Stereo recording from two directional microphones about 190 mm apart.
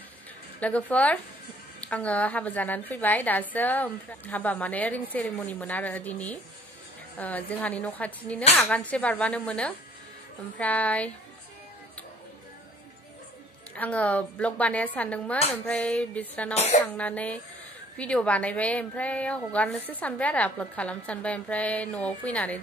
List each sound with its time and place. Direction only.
0.6 s a woman's voice: 5° left (ahead or behind)
13.7 s a woman's voice: 5° left (ahead or behind)
16.5 s speech: 35° left (ahead or behind)
16.8 s a woman's voice: 5° left (ahead or behind)